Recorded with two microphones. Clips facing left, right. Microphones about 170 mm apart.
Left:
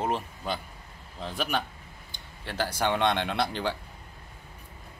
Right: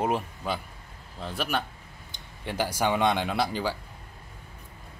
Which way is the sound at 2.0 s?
15° right (ahead or behind).